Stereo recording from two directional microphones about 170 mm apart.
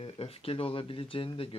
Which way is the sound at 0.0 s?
35° left (ahead or behind).